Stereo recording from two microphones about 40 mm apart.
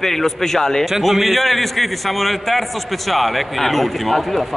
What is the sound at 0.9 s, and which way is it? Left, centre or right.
Speech, centre.